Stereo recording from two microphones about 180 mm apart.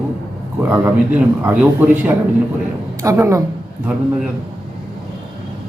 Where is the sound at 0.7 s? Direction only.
15° right (ahead or behind).